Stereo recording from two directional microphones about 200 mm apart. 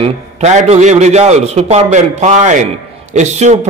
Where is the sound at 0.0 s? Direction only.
35° right (ahead or behind).